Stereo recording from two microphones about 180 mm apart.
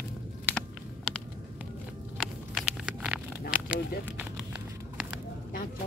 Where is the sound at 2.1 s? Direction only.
Centre (ahead or behind).